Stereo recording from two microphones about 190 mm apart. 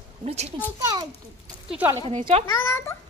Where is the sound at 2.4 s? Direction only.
15° left (ahead or behind).